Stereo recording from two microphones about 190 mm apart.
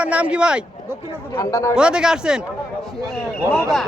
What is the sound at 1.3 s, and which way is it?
Speech, 15° left (ahead or behind).